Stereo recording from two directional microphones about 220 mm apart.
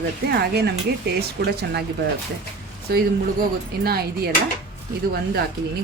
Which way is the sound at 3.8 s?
45° right (ahead or behind).